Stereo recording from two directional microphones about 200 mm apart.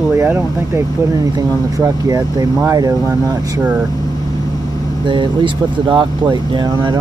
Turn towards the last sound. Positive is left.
turn(degrees=-20)  # may be behind; listen again after turning